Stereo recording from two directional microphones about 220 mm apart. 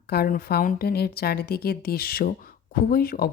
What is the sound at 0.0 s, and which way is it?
A woman's voice, 45° left (ahead or behind).